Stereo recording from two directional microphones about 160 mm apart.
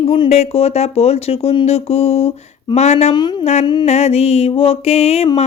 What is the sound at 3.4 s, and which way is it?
Speech, 45° left (ahead or behind).